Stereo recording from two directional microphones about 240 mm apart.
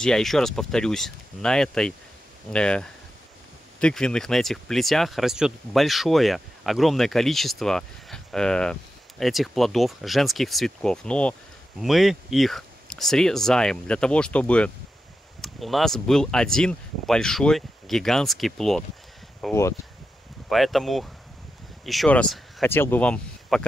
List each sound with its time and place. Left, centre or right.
0.0 s speech: centre